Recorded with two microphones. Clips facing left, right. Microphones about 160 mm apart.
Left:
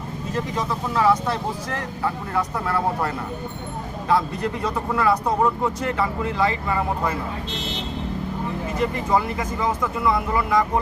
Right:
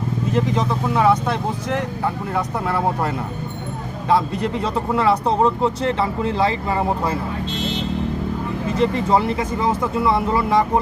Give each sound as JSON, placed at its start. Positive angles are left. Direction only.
{"t": 0.3, "sound": "speech", "side_deg": -20}
{"t": 4.1, "sound": "speech", "side_deg": -25}
{"t": 8.8, "sound": "speech", "side_deg": -30}